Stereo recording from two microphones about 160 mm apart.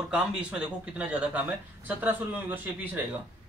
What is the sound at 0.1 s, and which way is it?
Speech, 5° right (ahead or behind).